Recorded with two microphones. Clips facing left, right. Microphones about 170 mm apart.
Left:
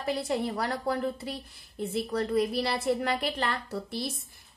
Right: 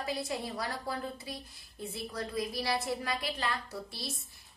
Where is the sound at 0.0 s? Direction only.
60° left (ahead or behind).